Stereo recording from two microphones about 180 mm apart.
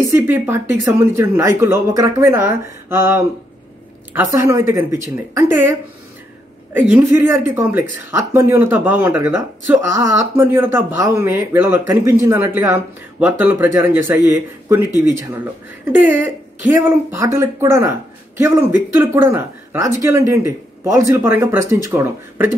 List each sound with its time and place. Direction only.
0.0 s speech: 15° right (ahead or behind)
6.9 s speech: 15° right (ahead or behind)